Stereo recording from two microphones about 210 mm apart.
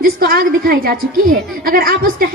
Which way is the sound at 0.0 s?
45° right (ahead or behind).